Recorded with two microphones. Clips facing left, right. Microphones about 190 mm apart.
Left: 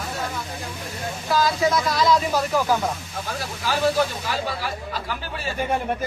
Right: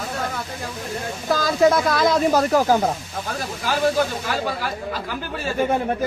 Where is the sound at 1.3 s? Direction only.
50° right (ahead or behind).